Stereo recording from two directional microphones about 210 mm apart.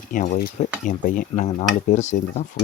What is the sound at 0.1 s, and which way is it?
Speech, 40° left (ahead or behind).